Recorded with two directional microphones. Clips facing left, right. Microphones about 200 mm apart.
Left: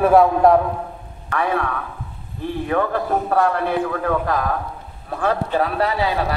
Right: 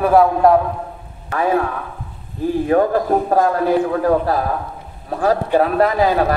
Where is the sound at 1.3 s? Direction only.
30° right (ahead or behind).